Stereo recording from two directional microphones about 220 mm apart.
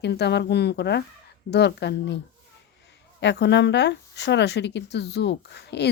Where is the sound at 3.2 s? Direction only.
50° left (ahead or behind).